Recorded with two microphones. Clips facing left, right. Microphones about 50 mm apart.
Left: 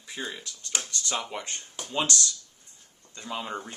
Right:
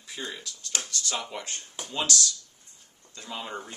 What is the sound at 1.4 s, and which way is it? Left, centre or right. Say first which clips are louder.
Speech: left 1 dB; centre.